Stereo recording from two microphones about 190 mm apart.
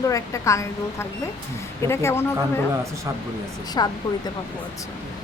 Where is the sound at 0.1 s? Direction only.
15° left (ahead or behind).